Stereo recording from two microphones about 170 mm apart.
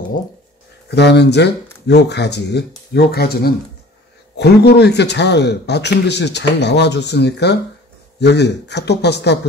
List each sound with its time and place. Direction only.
0.8 s a man's voice: 80° left